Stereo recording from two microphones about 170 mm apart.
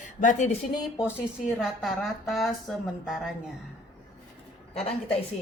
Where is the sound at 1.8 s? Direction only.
Centre (ahead or behind).